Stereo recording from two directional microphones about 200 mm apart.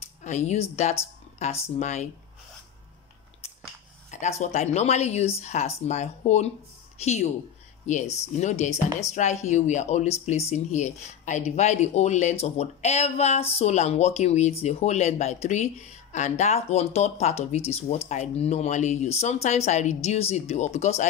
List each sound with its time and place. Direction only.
0.2 s speech: 35° left (ahead or behind)
4.1 s speech: 35° left (ahead or behind)